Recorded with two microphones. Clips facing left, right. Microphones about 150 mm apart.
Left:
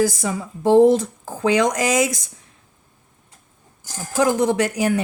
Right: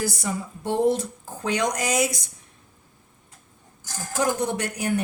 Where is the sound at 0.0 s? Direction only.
90° left.